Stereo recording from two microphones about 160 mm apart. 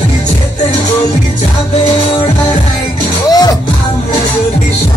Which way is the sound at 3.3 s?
25° left (ahead or behind).